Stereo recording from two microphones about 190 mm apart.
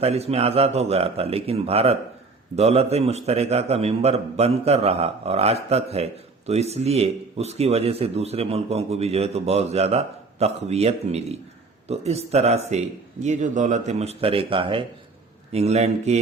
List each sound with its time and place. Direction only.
0.0 s a man's voice: 30° right (ahead or behind)